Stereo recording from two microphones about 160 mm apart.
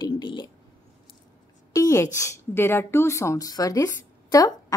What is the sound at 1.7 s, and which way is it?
A woman's voice, 20° left (ahead or behind).